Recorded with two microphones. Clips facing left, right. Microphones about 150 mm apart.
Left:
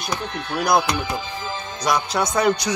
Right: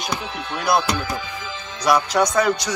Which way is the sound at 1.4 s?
45° left (ahead or behind).